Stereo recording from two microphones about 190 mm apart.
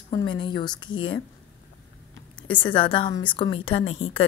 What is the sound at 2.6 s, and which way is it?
A woman's voice, 25° left (ahead or behind).